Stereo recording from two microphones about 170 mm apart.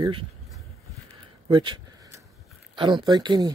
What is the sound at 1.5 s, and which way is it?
Speech, 30° right (ahead or behind).